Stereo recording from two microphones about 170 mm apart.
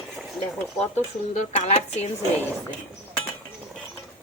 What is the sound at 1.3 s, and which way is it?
Speech, 40° left (ahead or behind).